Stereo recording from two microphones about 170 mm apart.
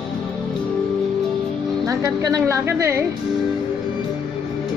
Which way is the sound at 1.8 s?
20° right (ahead or behind).